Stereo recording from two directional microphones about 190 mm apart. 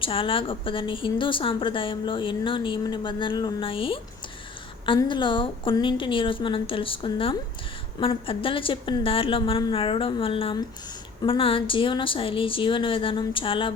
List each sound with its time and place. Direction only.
0.0 s a woman's voice: 30° left (ahead or behind)